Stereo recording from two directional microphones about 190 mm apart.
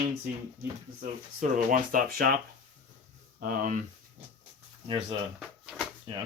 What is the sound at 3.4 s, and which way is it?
Speech, 45° right (ahead or behind).